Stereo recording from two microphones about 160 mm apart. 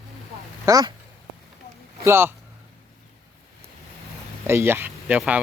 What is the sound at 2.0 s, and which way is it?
Speech, 15° right (ahead or behind).